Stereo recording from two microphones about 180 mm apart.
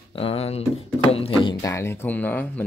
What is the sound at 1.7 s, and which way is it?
Speech, 15° left (ahead or behind).